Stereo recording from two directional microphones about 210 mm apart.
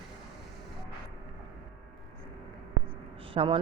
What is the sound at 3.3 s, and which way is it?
Speech, 25° right (ahead or behind).